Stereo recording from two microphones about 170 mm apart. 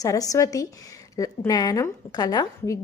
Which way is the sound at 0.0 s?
20° left (ahead or behind).